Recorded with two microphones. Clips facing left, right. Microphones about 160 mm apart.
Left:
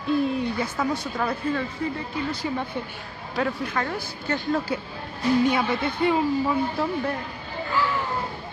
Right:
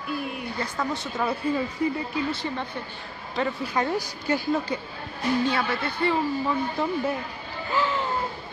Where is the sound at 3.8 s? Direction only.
20° right (ahead or behind).